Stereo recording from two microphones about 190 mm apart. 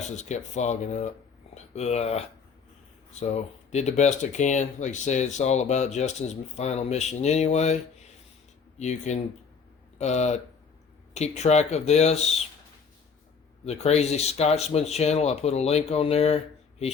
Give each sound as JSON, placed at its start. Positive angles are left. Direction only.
{"t": 0.2, "sound": "speech", "side_deg": 35}
{"t": 8.8, "sound": "speech", "side_deg": 40}
{"t": 13.7, "sound": "speech", "side_deg": 35}